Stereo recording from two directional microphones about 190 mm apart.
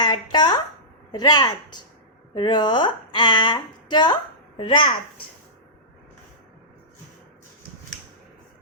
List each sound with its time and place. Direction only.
0.0 s a woman's voice: 20° left (ahead or behind)